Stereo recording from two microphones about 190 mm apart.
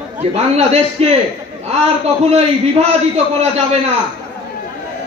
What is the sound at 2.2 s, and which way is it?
A man's voice, 35° right (ahead or behind).